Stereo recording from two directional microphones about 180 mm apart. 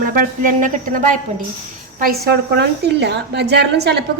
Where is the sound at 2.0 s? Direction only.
60° right (ahead or behind).